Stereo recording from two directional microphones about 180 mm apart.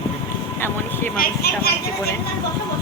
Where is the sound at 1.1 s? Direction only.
60° left (ahead or behind).